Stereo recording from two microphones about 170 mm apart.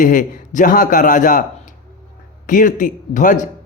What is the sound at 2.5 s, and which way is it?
Speech, 50° left (ahead or behind).